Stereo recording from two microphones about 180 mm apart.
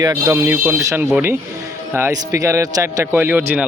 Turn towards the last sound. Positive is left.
turn(degrees=-10)  # may be behind; listen again after turning